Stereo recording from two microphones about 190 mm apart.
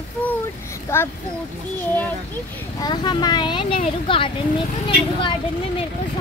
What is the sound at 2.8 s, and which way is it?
Speech, 20° left (ahead or behind).